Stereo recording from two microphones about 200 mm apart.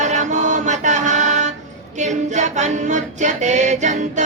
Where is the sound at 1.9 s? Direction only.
35° right (ahead or behind).